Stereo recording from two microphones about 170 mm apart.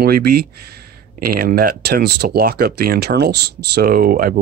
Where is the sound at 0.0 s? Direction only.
65° right (ahead or behind).